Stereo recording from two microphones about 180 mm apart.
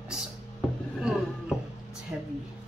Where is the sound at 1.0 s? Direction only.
5° right (ahead or behind).